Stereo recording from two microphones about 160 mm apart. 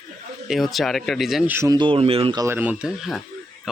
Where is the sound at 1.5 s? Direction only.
25° right (ahead or behind).